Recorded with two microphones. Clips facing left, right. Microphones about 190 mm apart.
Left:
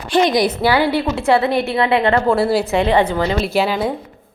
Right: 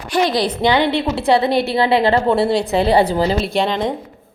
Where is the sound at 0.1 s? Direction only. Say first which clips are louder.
Left 2 dB; 20° left (ahead or behind).